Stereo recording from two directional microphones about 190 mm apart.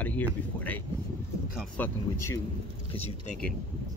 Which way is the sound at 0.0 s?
10° left (ahead or behind).